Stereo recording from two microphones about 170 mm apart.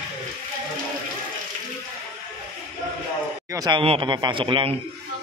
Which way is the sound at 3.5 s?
25° right (ahead or behind).